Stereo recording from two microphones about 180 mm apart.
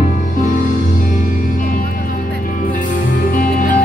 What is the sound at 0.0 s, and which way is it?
Music, 45° left (ahead or behind).